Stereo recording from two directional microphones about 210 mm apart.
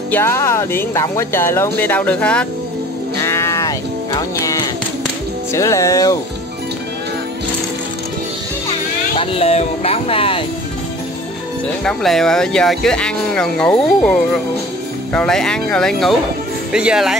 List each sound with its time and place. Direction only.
0.1 s speech: 10° left (ahead or behind)
3.2 s music: 15° left (ahead or behind)
5.5 s speech: 15° left (ahead or behind)
9.2 s speech: 30° left (ahead or behind)
11.8 s speech: centre (ahead or behind)